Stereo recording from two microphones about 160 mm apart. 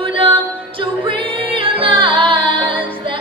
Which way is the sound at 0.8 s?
35° right (ahead or behind).